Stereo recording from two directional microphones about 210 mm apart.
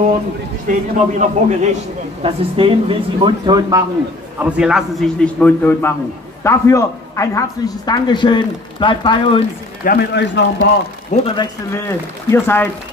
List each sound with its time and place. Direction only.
0.7 s a man's voice: 35° right (ahead or behind); by 3.8 s 20° right (ahead or behind)
4.4 s a man's voice: 5° right (ahead or behind); by 9.4 s 25° left (ahead or behind)
9.8 s a man's voice: 50° left (ahead or behind)
11.1 s speech: 35° left (ahead or behind)
12.3 s speech: 10° left (ahead or behind)